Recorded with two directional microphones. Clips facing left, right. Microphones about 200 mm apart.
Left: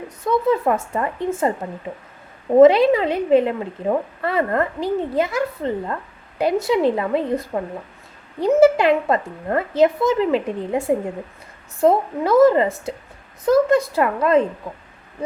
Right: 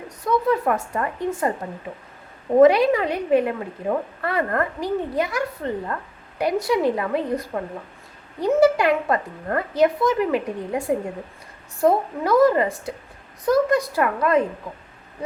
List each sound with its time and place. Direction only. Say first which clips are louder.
0.3 s a woman's voice: left 2 dB; 25° left (ahead or behind)
2.6 s a woman's voice: left 3 dB; 25° left (ahead or behind)